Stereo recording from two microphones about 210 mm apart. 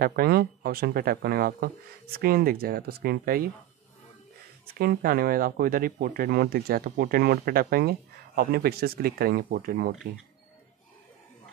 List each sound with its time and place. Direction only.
0.0 s speech: 45° right (ahead or behind)
4.7 s speech: 45° right (ahead or behind)